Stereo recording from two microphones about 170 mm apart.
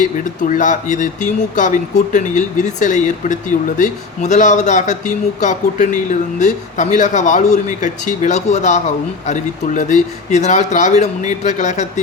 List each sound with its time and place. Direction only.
0.0 s speech: 50° left (ahead or behind)